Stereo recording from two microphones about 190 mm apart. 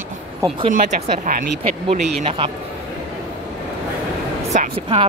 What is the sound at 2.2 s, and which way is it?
Speech, 30° right (ahead or behind).